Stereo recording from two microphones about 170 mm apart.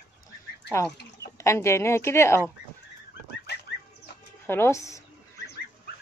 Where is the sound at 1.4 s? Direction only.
15° left (ahead or behind).